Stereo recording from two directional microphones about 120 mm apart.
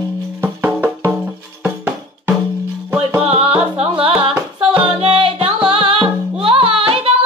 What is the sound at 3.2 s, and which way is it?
Music, 55° right (ahead or behind).